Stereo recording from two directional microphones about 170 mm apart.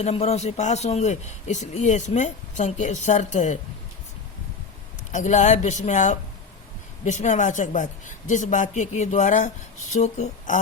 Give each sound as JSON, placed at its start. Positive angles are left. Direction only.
{"t": 0.0, "sound": "a man's voice", "side_deg": 40}
{"t": 5.1, "sound": "a man's voice", "side_deg": 45}